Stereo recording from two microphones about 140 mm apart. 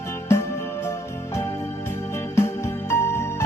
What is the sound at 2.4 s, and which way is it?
Music, 15° left (ahead or behind).